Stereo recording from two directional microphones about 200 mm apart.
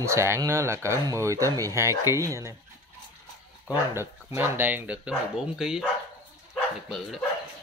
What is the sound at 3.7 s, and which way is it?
Speech, 10° right (ahead or behind).